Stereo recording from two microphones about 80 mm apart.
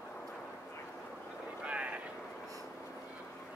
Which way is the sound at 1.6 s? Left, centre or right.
Centre.